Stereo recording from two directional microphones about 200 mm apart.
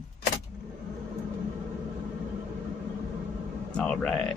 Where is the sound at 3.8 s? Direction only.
5° left (ahead or behind).